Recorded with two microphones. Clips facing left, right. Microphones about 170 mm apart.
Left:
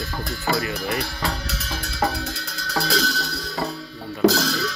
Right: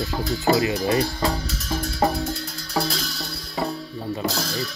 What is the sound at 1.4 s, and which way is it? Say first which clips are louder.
Music: right 4 dB; 70° left (ahead or behind).